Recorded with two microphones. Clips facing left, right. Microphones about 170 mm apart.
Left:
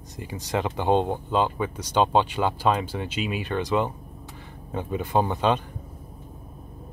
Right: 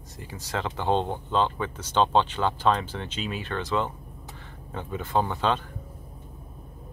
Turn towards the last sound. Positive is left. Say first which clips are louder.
# left 3 dB
turn(degrees=15)  # may be behind; listen again after turning